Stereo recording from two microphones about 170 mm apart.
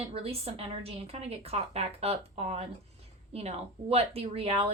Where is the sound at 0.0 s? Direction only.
35° right (ahead or behind).